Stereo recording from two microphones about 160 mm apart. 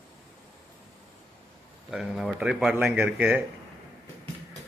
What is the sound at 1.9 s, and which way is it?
A man's voice, centre (ahead or behind).